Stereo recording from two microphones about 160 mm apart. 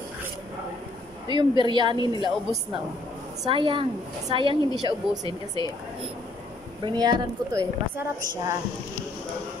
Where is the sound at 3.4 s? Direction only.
30° right (ahead or behind).